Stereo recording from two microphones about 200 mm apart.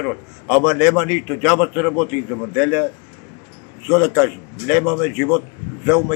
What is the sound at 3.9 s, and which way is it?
A man's voice, 15° right (ahead or behind).